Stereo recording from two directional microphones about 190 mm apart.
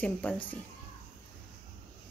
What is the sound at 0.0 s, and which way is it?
Speech, 10° left (ahead or behind).